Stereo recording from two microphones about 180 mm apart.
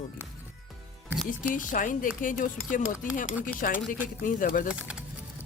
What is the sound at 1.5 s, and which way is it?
Speech, 45° left (ahead or behind).